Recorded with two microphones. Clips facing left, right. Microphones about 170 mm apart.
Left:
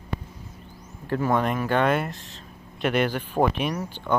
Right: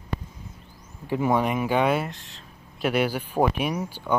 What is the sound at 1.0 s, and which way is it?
Speech, 15° right (ahead or behind).